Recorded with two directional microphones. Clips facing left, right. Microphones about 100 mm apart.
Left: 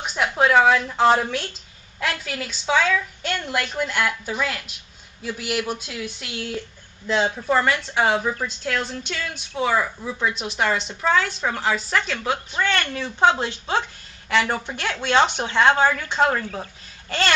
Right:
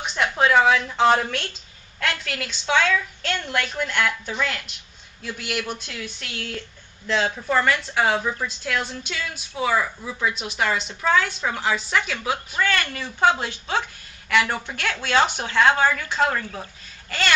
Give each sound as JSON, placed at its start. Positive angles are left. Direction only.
{"t": 0.0, "sound": "a woman's voice", "side_deg": 5}
{"t": 8.6, "sound": "a woman's voice", "side_deg": 0}
{"t": 13.4, "sound": "speech", "side_deg": 25}
{"t": 14.5, "sound": "speech", "side_deg": 10}